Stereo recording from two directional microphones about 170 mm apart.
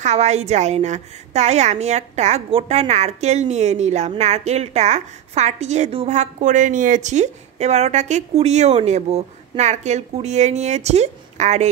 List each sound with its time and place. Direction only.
0.0 s a woman's voice: 40° right (ahead or behind)